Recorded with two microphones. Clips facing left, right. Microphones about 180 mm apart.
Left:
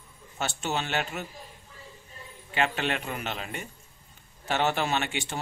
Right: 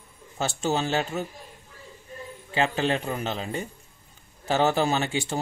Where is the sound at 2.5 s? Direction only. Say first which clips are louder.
Right 4 dB; 30° right (ahead or behind).